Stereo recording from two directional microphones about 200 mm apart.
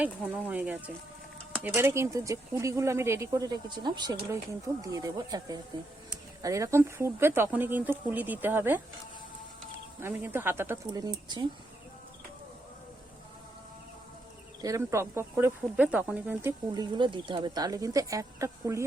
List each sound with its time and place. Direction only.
0.0 s speech: 10° right (ahead or behind)
10.0 s speech: 10° right (ahead or behind)
14.6 s speech: 15° right (ahead or behind)